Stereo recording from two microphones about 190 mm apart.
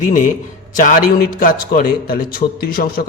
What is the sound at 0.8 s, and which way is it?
A man's voice, 45° left (ahead or behind).